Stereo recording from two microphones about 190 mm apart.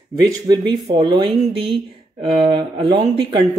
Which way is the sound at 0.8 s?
25° right (ahead or behind).